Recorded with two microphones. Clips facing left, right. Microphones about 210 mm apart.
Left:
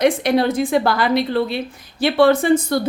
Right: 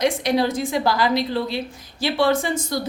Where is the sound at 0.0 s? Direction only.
60° left (ahead or behind).